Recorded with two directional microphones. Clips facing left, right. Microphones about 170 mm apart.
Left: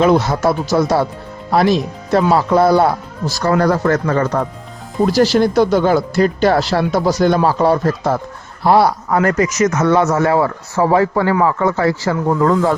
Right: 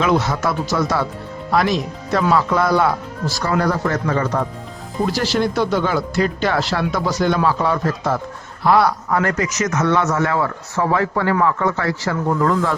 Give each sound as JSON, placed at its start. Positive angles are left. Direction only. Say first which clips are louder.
{"t": 0.0, "sound": "speech", "louder": "left 5 dB", "side_deg": 35}